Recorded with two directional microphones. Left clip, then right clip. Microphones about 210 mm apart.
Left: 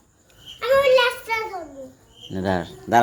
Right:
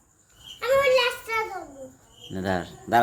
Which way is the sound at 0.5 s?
10° left (ahead or behind).